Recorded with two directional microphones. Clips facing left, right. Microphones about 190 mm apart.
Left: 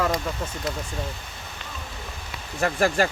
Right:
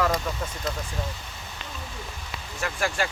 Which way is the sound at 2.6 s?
40° left (ahead or behind).